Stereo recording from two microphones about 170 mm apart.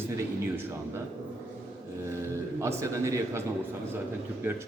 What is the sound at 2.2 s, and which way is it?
A man's voice, 15° right (ahead or behind).